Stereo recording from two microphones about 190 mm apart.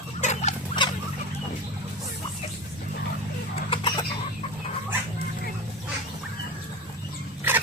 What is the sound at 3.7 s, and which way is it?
Chicken, 25° left (ahead or behind).